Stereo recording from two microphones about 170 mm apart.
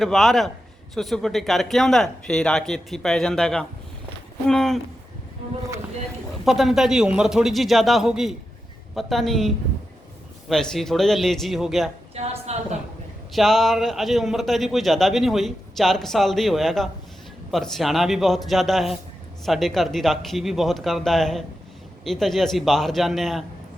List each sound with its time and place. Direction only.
0.0 s a man's voice: centre (ahead or behind)
6.4 s a man's voice: centre (ahead or behind)
10.5 s a man's voice: 5° left (ahead or behind)
12.1 s a sound: 35° right (ahead or behind)
13.3 s a man's voice: centre (ahead or behind)